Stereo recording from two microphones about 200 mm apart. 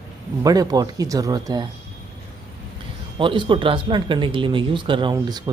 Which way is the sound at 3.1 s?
25° right (ahead or behind).